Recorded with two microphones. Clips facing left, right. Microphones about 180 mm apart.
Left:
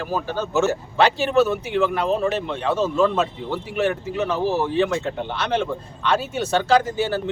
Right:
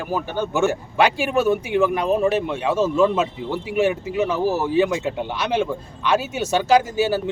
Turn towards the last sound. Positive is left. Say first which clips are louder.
# right 2 dB
turn(degrees=-10)  # may be behind; listen again after turning